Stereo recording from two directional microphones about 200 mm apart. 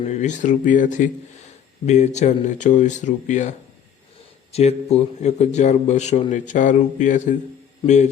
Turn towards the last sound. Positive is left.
turn(degrees=25)  # may be behind; listen again after turning